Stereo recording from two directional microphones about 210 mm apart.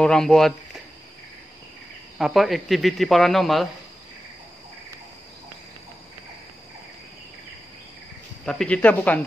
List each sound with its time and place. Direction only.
0.0 s speech: 5° left (ahead or behind)
2.1 s speech: centre (ahead or behind)
8.5 s speech: 5° left (ahead or behind)